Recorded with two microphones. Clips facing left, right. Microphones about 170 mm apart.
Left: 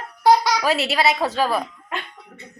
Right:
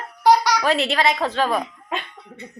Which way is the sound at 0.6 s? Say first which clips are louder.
Even; 5° left (ahead or behind).